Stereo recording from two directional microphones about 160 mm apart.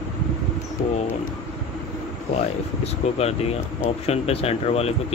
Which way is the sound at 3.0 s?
40° left (ahead or behind).